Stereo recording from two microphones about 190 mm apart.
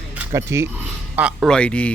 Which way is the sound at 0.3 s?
15° right (ahead or behind).